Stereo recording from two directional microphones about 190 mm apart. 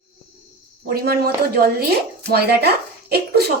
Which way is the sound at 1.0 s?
55° right (ahead or behind).